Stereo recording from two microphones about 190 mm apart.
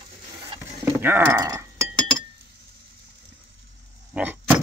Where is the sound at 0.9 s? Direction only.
10° right (ahead or behind).